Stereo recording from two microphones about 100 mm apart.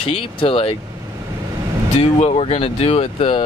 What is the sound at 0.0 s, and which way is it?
Speech, 60° left (ahead or behind).